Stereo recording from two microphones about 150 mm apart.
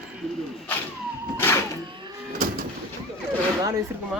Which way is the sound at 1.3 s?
15° left (ahead or behind).